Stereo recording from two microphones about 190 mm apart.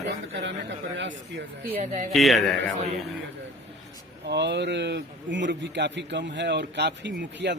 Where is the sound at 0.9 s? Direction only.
70° right (ahead or behind).